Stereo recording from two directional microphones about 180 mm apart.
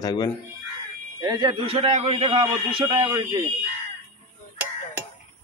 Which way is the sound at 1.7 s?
30° right (ahead or behind).